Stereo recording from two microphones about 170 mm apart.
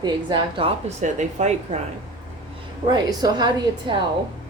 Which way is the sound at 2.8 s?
25° right (ahead or behind).